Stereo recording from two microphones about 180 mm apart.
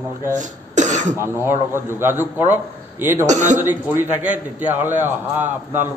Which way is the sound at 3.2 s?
40° right (ahead or behind).